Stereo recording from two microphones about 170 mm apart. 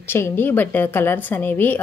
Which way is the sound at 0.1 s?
10° left (ahead or behind).